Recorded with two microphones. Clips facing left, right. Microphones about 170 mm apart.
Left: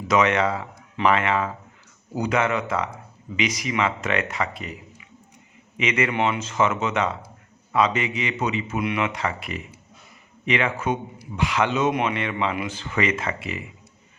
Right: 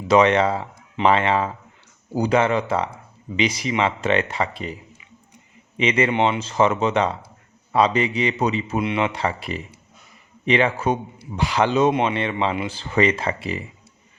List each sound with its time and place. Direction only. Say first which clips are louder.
0.1 s a man's voice: right 4 dB; 30° right (ahead or behind)